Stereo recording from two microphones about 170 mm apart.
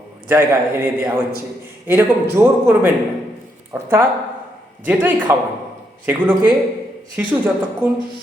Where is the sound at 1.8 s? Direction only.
15° right (ahead or behind).